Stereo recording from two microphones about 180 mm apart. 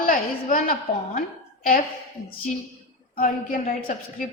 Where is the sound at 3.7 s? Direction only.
50° left (ahead or behind).